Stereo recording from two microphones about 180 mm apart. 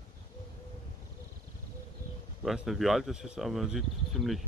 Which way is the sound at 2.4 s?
Centre (ahead or behind).